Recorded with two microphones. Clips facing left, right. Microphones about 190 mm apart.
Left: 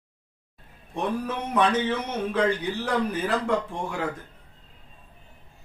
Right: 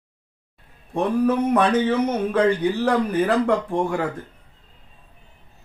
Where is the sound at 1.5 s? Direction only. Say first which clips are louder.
Right 5 dB; 55° right (ahead or behind).